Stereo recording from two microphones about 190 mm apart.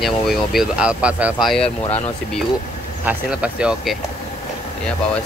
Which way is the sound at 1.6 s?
30° left (ahead or behind).